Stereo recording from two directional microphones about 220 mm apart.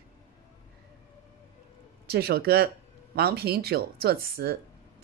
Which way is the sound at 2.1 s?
45° right (ahead or behind).